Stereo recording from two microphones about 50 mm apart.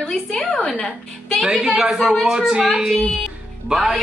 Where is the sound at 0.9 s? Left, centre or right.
Centre.